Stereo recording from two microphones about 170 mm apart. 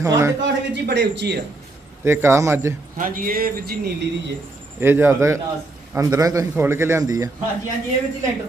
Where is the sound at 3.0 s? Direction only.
55° right (ahead or behind).